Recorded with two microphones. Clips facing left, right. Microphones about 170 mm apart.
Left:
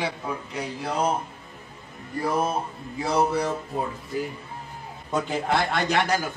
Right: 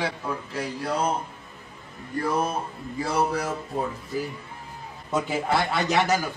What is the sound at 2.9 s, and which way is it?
Speech, 25° left (ahead or behind).